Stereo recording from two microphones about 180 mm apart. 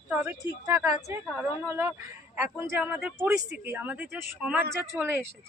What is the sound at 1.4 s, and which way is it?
A man's voice, 15° right (ahead or behind).